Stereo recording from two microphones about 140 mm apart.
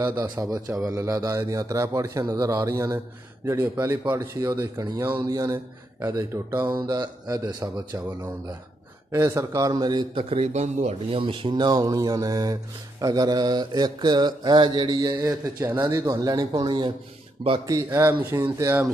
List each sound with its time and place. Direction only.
0.2 s speech: 25° right (ahead or behind)
9.1 s speech: 20° right (ahead or behind)
10.4 s speech: 55° right (ahead or behind); by 15.1 s 30° right (ahead or behind)
15.6 s speech: 15° right (ahead or behind)
16.0 s speech: 30° right (ahead or behind)
17.8 s speech: 20° right (ahead or behind)